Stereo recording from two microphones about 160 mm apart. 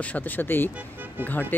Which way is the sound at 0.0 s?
10° left (ahead or behind).